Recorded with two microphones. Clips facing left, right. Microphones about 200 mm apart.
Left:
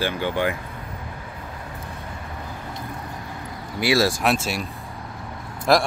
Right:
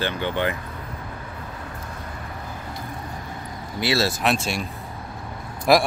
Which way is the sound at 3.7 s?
10° left (ahead or behind).